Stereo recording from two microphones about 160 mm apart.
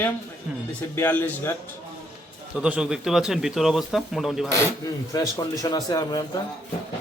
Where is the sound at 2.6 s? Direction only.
5° right (ahead or behind).